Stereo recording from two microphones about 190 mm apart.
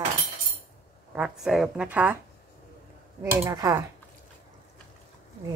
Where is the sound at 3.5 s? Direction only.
20° right (ahead or behind).